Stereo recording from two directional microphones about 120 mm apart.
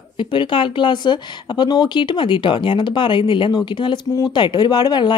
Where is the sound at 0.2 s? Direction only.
40° left (ahead or behind).